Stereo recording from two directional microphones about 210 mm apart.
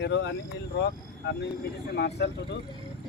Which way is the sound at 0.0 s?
55° left (ahead or behind).